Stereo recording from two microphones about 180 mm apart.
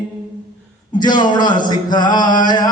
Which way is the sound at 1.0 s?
25° left (ahead or behind).